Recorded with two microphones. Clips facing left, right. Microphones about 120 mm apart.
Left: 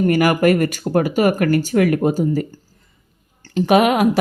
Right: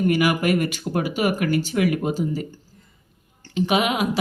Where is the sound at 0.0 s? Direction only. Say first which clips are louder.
Left 5 dB; 45° left (ahead or behind).